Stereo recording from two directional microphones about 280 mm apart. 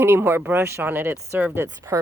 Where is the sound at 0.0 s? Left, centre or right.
Centre.